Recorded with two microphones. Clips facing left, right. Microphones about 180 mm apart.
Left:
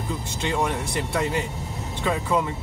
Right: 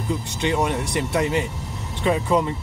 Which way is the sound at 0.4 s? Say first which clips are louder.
Right 3 dB; 20° right (ahead or behind).